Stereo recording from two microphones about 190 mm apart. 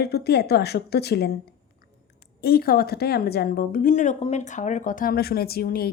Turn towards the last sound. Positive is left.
turn(degrees=55)  # may be behind; listen again after turning